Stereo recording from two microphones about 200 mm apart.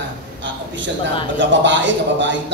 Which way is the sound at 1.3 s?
65° right (ahead or behind).